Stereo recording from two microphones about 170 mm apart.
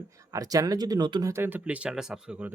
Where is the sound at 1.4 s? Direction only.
10° right (ahead or behind).